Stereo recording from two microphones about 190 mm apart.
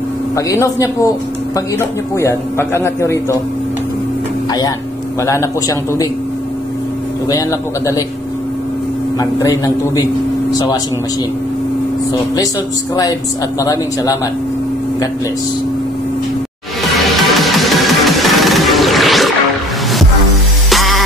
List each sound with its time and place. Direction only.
0.4 s a man's voice: 15° left (ahead or behind)
4.5 s a man's voice: 20° left (ahead or behind)
7.2 s a man's voice: 20° left (ahead or behind)
9.4 s a man's voice: 20° left (ahead or behind)
13.6 s a man's voice: 20° left (ahead or behind)
17.2 s music: centre (ahead or behind)
20.7 s music: centre (ahead or behind)